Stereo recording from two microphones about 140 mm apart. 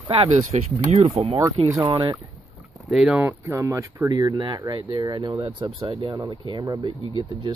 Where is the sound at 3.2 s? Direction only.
20° right (ahead or behind).